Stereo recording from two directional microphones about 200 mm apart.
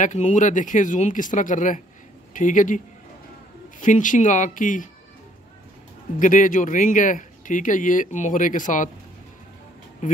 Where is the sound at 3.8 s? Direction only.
40° left (ahead or behind).